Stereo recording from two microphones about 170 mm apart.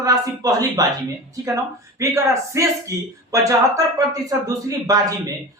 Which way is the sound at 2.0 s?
20° right (ahead or behind).